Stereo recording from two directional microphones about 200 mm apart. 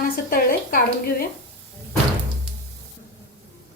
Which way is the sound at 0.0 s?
45° left (ahead or behind).